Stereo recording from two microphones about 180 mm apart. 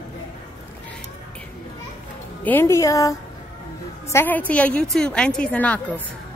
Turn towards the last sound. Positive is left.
turn(degrees=10)  # may be behind; listen again after turning